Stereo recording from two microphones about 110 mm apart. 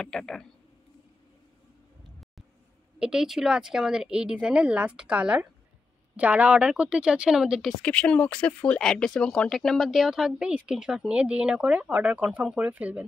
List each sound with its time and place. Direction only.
0.0 s speech: 5° left (ahead or behind)
3.0 s a woman's voice: 5° right (ahead or behind)
7.8 s speech: 10° left (ahead or behind); by 13.0 s 10° right (ahead or behind)